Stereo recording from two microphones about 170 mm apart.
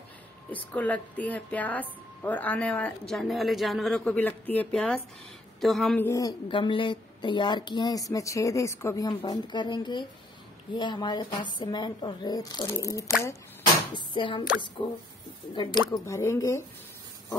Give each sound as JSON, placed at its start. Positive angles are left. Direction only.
{"t": 0.7, "sound": "a woman's voice", "side_deg": 10}
{"t": 5.9, "sound": "speech", "side_deg": 15}
{"t": 16.1, "sound": "a woman's voice", "side_deg": 15}